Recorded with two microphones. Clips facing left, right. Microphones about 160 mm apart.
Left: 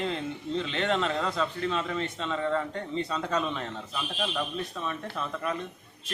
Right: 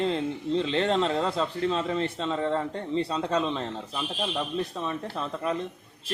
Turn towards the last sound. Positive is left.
turn(degrees=-30)  # may be behind; listen again after turning